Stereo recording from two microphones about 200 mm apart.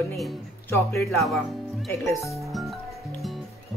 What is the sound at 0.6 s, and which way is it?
Speech, 15° left (ahead or behind).